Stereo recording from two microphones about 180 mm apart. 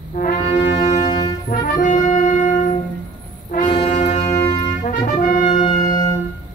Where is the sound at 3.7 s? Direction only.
35° left (ahead or behind).